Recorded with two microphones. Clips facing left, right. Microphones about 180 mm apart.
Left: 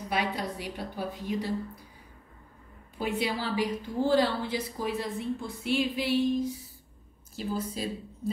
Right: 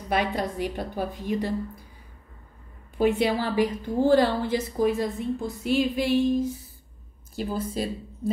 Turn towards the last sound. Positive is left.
turn(degrees=-55)  # may be behind; listen again after turning